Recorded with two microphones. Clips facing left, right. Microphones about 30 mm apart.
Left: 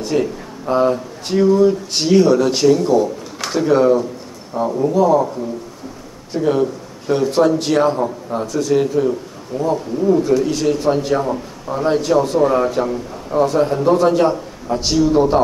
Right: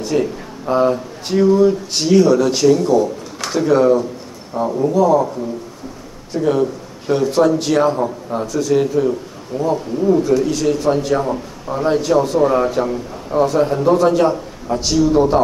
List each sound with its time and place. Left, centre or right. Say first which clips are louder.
0.0 s speech: even; centre
2.0 s a man's voice: even; centre
6.4 s a man's voice: even; centre
10.3 s a man's voice: even; centre
14.8 s speech: even; centre